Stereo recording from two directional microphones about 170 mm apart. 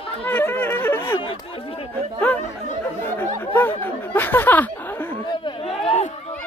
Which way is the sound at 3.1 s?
10° left (ahead or behind).